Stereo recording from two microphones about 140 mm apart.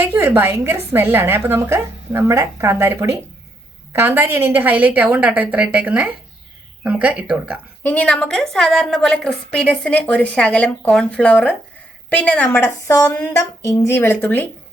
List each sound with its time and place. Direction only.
0.0 s a woman's voice: 20° right (ahead or behind)
7.9 s a woman's voice: 10° left (ahead or behind)